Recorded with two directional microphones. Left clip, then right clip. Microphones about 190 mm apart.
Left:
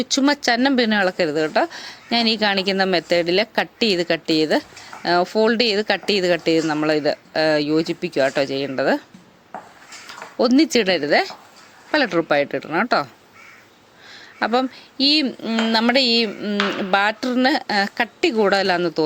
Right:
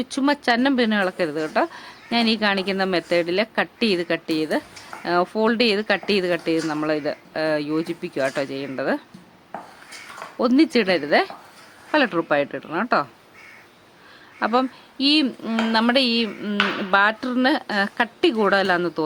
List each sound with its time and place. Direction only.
0.0 s speech: 10° left (ahead or behind)
10.3 s speech: 10° left (ahead or behind)
14.3 s speech: 15° left (ahead or behind)